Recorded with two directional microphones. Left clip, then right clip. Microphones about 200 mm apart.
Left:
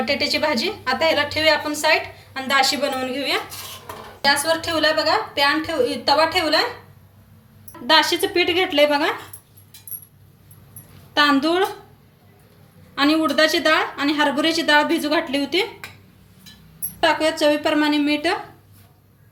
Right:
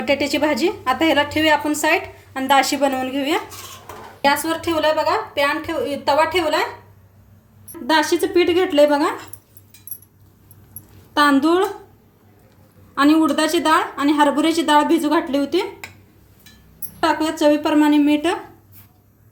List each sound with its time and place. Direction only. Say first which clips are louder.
0.0 s a woman's voice: right 2 dB; 45° right (ahead or behind)
7.9 s a woman's voice: left 1 dB; 40° right (ahead or behind)
11.1 s a woman's voice: right 2 dB; 40° right (ahead or behind)
12.9 s a woman's voice: right 3 dB; 40° right (ahead or behind)
17.0 s a woman's voice: even; 45° right (ahead or behind)